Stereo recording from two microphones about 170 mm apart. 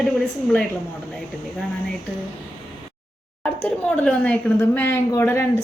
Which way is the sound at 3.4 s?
10° left (ahead or behind).